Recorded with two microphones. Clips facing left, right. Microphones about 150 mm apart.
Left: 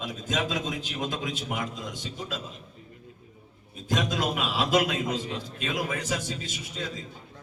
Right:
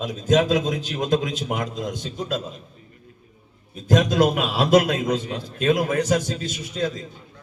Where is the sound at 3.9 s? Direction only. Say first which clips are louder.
Right 9 dB; 45° right (ahead or behind).